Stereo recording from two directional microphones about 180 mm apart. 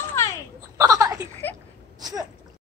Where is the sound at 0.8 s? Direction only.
20° right (ahead or behind).